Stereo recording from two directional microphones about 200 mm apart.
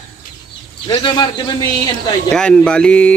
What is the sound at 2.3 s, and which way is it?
Speech, 5° left (ahead or behind).